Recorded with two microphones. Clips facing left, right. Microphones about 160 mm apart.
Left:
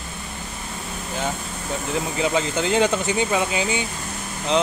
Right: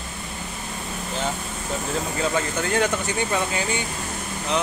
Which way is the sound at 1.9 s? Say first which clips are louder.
Left 3 dB; 15° left (ahead or behind).